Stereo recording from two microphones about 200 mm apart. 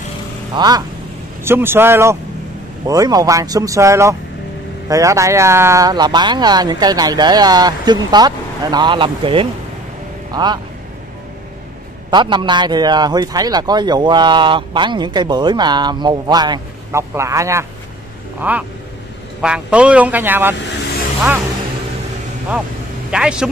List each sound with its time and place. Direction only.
0.6 s a man's voice: 20° right (ahead or behind)
12.1 s a man's voice: 25° right (ahead or behind)
23.1 s a man's voice: 5° right (ahead or behind)